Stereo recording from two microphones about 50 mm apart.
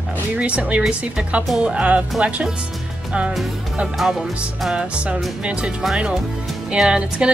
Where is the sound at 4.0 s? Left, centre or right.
Centre.